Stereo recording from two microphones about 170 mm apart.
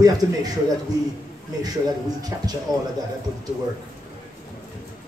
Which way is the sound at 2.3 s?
15° right (ahead or behind).